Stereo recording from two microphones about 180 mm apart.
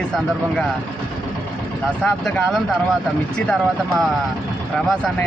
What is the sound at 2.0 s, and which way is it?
Speech, 5° left (ahead or behind).